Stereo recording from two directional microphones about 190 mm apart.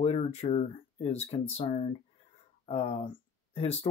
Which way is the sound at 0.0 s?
35° left (ahead or behind).